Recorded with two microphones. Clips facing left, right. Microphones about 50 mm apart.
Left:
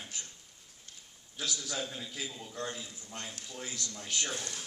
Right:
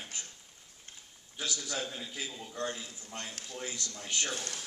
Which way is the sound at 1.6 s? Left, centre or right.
Centre.